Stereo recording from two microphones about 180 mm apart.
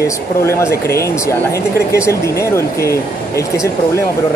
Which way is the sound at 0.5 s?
15° left (ahead or behind).